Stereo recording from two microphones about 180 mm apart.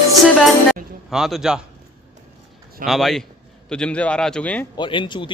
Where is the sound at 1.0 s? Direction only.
Centre (ahead or behind).